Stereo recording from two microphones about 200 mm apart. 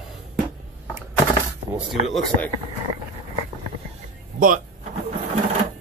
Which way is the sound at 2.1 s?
5° left (ahead or behind).